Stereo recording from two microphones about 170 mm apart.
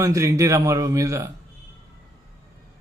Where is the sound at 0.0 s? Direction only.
20° right (ahead or behind).